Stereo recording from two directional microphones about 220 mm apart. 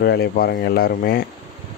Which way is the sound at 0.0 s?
45° left (ahead or behind).